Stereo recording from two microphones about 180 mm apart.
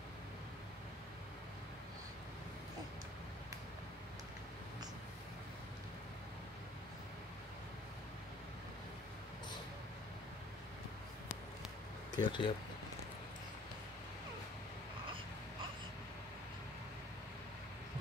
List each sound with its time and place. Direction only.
12.2 s speech: 25° left (ahead or behind)